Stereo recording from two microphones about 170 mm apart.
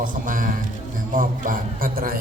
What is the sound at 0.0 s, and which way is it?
A man's voice, 50° right (ahead or behind).